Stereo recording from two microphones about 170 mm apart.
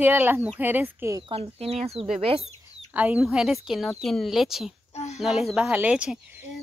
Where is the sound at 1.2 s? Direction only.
35° right (ahead or behind).